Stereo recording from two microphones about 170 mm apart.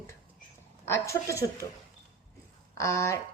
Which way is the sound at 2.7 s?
15° left (ahead or behind).